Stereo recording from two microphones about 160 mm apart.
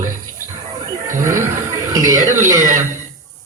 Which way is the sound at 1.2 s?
15° right (ahead or behind).